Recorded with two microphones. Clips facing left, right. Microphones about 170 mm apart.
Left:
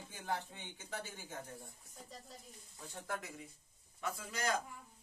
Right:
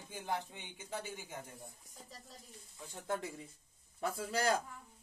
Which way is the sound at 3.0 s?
25° right (ahead or behind).